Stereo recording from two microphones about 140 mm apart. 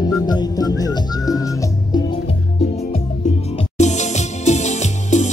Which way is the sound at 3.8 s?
55° left (ahead or behind).